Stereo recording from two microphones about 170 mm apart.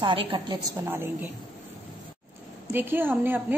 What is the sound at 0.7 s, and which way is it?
Speech, 15° right (ahead or behind).